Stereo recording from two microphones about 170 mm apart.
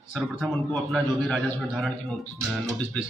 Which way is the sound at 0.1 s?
Centre (ahead or behind).